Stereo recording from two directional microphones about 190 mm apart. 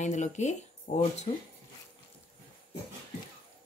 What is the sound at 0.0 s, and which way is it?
A woman's voice, 40° left (ahead or behind).